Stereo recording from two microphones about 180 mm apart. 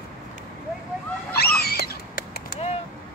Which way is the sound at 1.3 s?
60° left (ahead or behind).